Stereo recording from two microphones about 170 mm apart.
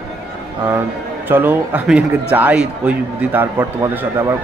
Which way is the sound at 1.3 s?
10° right (ahead or behind).